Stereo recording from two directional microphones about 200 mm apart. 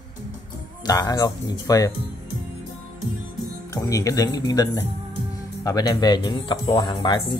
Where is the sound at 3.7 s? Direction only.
15° left (ahead or behind).